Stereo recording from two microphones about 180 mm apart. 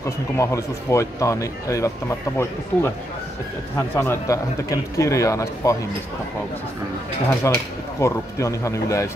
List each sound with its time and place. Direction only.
0.0 s speech: 15° left (ahead or behind)
7.5 s speech: 15° left (ahead or behind)